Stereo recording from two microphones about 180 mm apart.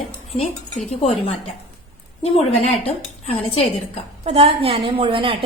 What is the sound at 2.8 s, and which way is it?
Speech, 35° left (ahead or behind).